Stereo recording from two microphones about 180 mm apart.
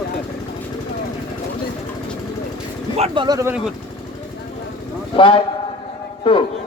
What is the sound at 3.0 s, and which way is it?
Speech, 25° right (ahead or behind).